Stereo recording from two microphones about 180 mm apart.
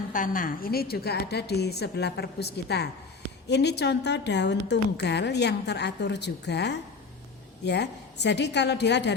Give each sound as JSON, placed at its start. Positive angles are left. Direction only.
{"t": 0.1, "sound": "a woman's voice", "side_deg": 50}